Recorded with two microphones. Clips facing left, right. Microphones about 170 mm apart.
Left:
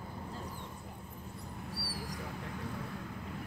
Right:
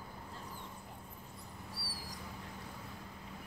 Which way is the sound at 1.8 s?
65° left (ahead or behind).